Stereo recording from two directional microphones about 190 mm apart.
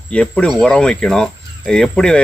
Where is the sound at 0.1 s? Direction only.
5° left (ahead or behind).